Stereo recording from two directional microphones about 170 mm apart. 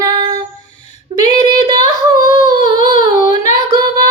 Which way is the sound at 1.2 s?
25° right (ahead or behind).